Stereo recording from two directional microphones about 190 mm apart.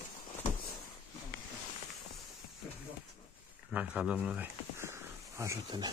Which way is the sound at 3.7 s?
5° right (ahead or behind).